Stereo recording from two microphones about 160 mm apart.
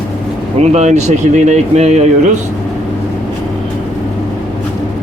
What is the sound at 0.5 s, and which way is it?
Speech, 45° right (ahead or behind).